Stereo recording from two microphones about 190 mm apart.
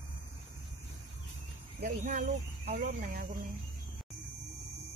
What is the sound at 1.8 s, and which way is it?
Speech, 45° right (ahead or behind).